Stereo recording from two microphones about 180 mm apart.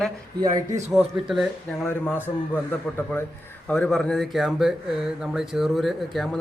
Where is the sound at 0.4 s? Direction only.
20° right (ahead or behind).